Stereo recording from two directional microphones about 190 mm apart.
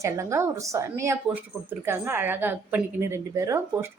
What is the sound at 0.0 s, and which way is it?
Speech, 15° right (ahead or behind).